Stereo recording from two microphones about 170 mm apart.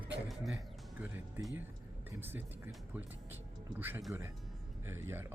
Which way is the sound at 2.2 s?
10° right (ahead or behind).